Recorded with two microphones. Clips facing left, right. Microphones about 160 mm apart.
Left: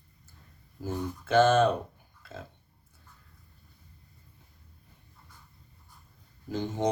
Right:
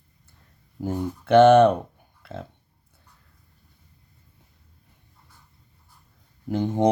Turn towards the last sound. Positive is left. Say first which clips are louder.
# right 8 dB
turn(degrees=-60)  # may be behind; listen again after turning